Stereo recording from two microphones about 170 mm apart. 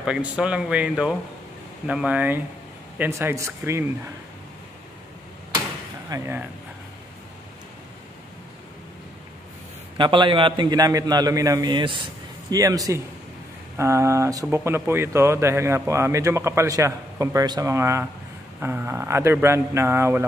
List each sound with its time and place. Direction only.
0.0 s a man's voice: 5° right (ahead or behind)
6.0 s speech: 15° right (ahead or behind)
9.9 s a man's voice: 30° right (ahead or behind)